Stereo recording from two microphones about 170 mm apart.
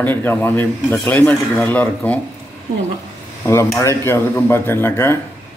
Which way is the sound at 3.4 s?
15° left (ahead or behind).